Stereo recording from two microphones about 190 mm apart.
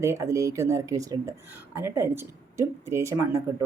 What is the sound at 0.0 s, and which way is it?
Speech, 15° right (ahead or behind).